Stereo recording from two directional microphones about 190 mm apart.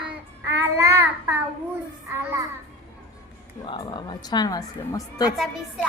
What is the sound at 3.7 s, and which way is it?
A woman's voice, 25° left (ahead or behind).